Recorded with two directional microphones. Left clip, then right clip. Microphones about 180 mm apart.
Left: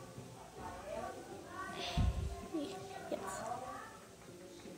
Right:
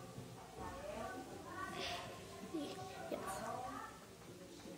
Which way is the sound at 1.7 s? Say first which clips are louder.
Left 5 dB; 10° right (ahead or behind).